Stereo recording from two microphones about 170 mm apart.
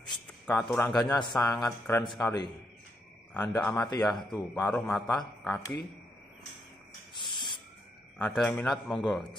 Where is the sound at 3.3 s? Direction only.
15° left (ahead or behind).